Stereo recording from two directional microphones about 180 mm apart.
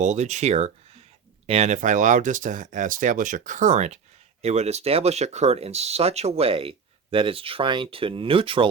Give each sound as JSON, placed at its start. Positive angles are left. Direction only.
{"t": 0.0, "sound": "speech", "side_deg": -40}